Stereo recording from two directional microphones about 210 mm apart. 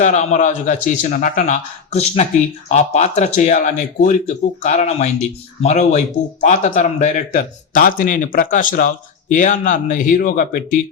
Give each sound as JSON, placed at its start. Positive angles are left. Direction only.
{"t": 0.0, "sound": "speech", "side_deg": 35}